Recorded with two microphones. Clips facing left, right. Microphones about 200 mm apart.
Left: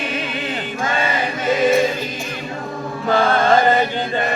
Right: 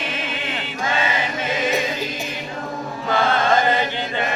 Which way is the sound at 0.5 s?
45° left (ahead or behind).